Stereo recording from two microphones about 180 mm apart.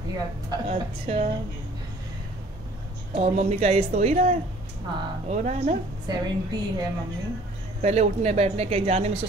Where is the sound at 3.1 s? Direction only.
35° right (ahead or behind).